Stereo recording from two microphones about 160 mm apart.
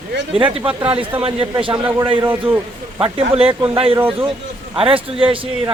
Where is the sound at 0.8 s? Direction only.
35° right (ahead or behind).